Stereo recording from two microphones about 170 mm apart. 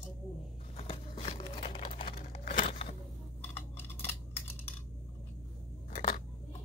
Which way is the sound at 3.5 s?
15° left (ahead or behind).